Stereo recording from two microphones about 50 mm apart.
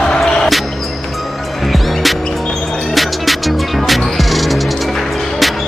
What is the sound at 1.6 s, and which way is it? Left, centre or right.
Music, centre.